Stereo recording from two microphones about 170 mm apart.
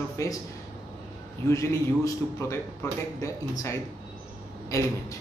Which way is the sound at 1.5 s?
15° left (ahead or behind).